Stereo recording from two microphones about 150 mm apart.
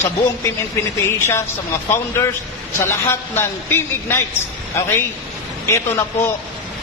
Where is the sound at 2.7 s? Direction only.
15° left (ahead or behind).